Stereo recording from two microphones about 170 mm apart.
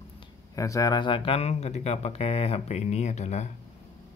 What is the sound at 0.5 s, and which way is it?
Speech, 20° left (ahead or behind).